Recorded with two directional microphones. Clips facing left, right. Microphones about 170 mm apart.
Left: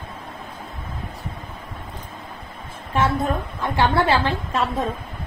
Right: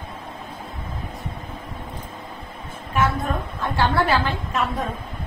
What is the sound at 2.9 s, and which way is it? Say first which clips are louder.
A woman's voice: left 2 dB; 30° left (ahead or behind).